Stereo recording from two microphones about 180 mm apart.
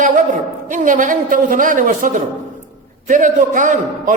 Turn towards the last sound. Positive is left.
turn(degrees=-45)  # may be behind; listen again after turning